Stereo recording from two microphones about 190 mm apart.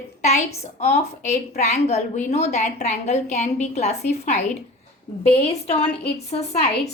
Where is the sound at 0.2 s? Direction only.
35° left (ahead or behind).